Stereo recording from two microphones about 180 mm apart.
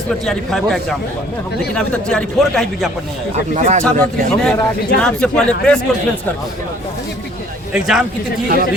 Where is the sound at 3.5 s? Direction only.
40° right (ahead or behind).